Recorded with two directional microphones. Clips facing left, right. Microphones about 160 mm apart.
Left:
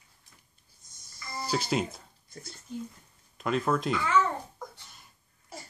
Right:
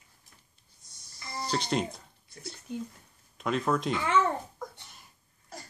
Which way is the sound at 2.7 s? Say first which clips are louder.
Right 1 dB; 65° right (ahead or behind).